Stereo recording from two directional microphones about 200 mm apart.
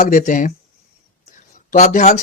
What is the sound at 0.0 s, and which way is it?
Speech, 40° left (ahead or behind).